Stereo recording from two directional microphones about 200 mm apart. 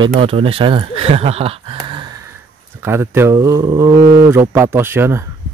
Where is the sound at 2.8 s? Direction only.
10° right (ahead or behind).